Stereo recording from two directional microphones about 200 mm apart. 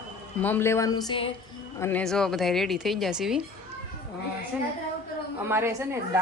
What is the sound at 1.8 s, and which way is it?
A woman's voice, 5° left (ahead or behind).